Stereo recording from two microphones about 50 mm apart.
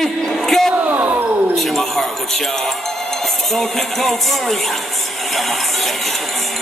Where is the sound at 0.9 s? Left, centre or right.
Right.